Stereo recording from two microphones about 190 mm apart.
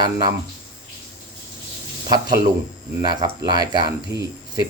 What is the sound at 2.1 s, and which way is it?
Speech, 20° right (ahead or behind).